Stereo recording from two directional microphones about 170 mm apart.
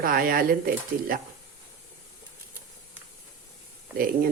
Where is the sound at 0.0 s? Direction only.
60° right (ahead or behind).